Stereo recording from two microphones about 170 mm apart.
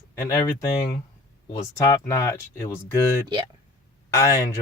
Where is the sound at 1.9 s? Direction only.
20° left (ahead or behind).